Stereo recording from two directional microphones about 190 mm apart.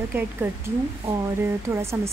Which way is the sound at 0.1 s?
10° right (ahead or behind).